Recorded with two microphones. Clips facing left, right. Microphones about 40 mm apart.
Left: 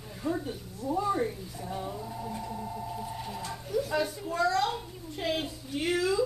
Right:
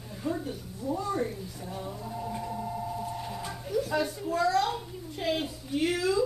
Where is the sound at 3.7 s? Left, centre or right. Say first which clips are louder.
Right 1 dB; centre.